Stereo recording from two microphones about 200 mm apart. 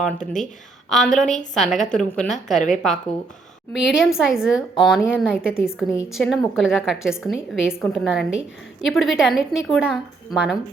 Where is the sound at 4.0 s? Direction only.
Centre (ahead or behind).